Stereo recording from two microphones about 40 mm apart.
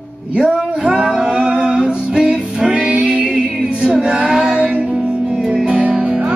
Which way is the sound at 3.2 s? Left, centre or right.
Centre.